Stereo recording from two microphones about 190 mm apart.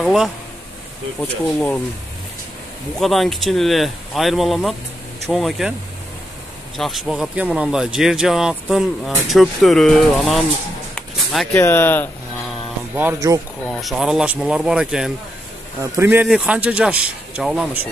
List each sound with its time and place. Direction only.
0.0 s speech: centre (ahead or behind)
3.0 s speech: centre (ahead or behind)
6.8 s speech: centre (ahead or behind)
11.0 s a sound: 10° left (ahead or behind)
12.9 s speech: 15° right (ahead or behind)
13.7 s speech: centre (ahead or behind)